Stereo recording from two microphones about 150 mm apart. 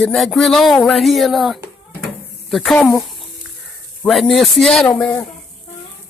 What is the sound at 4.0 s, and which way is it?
Speech, centre (ahead or behind).